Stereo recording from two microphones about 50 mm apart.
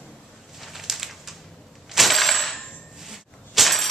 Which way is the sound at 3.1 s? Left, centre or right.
Centre.